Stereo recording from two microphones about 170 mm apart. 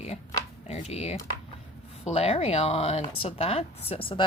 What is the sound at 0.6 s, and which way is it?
Speech, 40° left (ahead or behind).